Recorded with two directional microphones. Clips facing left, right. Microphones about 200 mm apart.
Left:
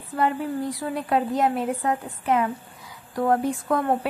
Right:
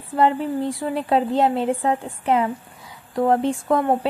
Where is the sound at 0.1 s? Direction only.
25° right (ahead or behind).